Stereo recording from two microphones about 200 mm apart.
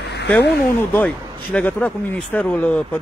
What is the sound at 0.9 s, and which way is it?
Speech, 10° left (ahead or behind).